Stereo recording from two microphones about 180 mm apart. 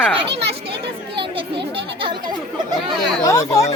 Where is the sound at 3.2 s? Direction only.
20° left (ahead or behind).